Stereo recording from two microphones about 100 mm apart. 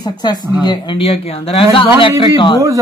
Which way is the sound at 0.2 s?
45° left (ahead or behind).